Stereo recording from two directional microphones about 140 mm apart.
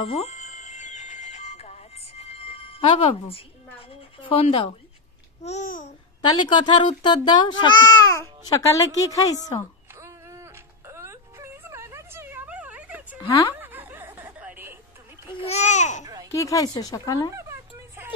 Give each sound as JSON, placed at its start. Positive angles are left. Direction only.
{"t": 0.0, "sound": "music", "side_deg": 50}
{"t": 4.3, "sound": "a woman's voice", "side_deg": 40}
{"t": 5.7, "sound": "a child's voice", "side_deg": 70}
{"t": 6.2, "sound": "a woman's voice", "side_deg": 35}
{"t": 9.9, "sound": "whimper", "side_deg": -20}
{"t": 13.3, "sound": "a woman's voice", "side_deg": 35}
{"t": 13.6, "sound": "snicker", "side_deg": -15}
{"t": 15.2, "sound": "babbling", "side_deg": 40}
{"t": 16.3, "sound": "a child's voice", "side_deg": 20}
{"t": 17.3, "sound": "a sound", "side_deg": -20}